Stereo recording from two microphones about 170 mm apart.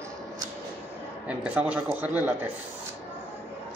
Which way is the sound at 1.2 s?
10° right (ahead or behind).